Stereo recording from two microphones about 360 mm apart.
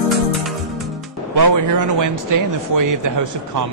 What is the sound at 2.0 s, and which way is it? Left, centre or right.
Speech, right.